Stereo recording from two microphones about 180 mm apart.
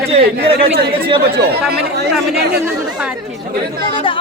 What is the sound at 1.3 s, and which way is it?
Speech, 65° right (ahead or behind).